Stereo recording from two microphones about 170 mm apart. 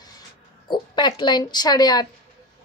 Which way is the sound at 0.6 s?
25° left (ahead or behind).